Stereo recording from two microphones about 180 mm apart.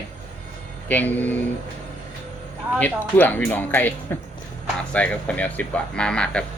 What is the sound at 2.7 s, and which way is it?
Speech, 10° left (ahead or behind).